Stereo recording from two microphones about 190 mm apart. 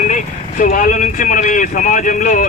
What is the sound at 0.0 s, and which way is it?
Speech, 45° left (ahead or behind).